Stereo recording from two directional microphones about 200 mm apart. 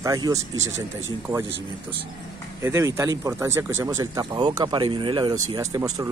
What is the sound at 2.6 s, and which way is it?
Speech, 15° right (ahead or behind).